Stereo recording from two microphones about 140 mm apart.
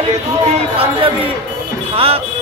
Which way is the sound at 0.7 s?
40° right (ahead or behind).